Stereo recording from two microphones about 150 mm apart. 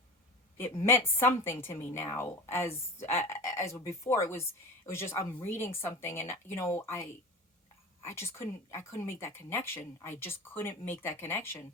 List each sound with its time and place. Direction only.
0.9 s a woman's voice: 15° left (ahead or behind)